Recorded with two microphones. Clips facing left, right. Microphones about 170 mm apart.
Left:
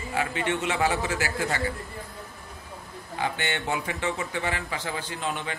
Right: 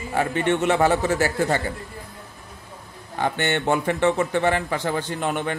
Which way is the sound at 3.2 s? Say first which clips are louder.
Right 6 dB; 50° right (ahead or behind).